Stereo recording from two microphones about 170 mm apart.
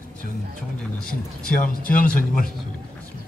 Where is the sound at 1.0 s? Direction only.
55° left (ahead or behind).